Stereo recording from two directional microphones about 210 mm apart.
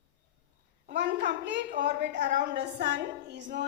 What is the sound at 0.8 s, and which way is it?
Speech, 55° right (ahead or behind).